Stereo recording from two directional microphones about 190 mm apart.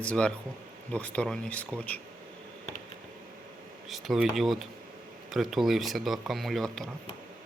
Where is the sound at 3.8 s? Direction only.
Centre (ahead or behind).